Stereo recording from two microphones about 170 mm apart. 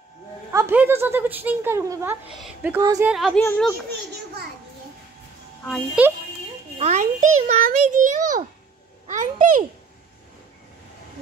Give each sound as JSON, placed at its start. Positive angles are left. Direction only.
{"t": 0.5, "sound": "speech", "side_deg": -15}
{"t": 2.8, "sound": "a woman's voice", "side_deg": -20}
{"t": 3.1, "sound": "speech", "side_deg": 0}
{"t": 6.0, "sound": "speech", "side_deg": -5}
{"t": 6.8, "sound": "a child's voice", "side_deg": -45}